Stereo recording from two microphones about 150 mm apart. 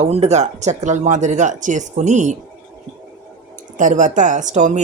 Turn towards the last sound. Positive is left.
turn(degrees=-55)  # may be behind; listen again after turning